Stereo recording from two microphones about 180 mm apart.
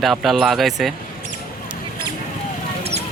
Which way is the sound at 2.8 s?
35° right (ahead or behind).